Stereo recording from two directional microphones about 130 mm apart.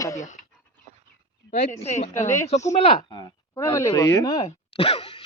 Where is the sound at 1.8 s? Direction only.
60° left (ahead or behind).